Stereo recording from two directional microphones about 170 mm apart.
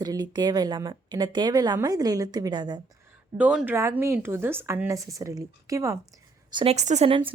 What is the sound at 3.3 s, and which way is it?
A woman's voice, 5° right (ahead or behind).